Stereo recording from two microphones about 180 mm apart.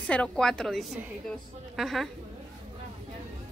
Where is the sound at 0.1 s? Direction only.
5° left (ahead or behind).